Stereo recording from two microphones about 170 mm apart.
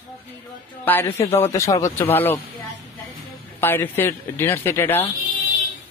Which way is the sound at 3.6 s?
10° left (ahead or behind).